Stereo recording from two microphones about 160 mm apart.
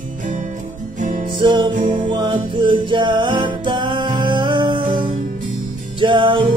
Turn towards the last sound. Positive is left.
turn(degrees=-30)  # may be behind; listen again after turning